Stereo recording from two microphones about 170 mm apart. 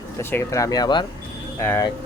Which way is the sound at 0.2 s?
15° left (ahead or behind).